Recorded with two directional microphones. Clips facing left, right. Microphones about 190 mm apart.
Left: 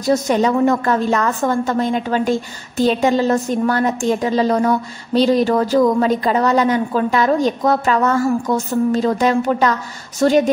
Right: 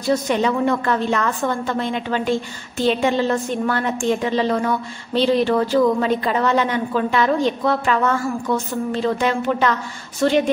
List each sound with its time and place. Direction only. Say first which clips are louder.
0.0 s a woman's voice: left 3 dB; 40° left (ahead or behind)